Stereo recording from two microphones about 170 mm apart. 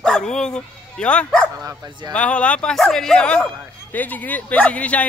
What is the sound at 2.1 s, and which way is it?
Speech, 5° left (ahead or behind).